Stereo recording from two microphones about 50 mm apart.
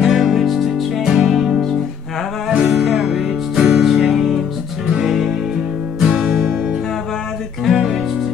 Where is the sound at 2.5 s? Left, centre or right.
Centre.